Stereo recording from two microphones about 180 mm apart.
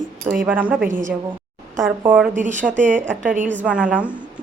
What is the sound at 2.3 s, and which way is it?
Speech, 45° right (ahead or behind).